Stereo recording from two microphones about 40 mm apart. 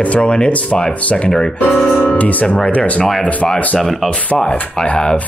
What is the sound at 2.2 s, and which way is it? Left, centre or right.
Speech, left.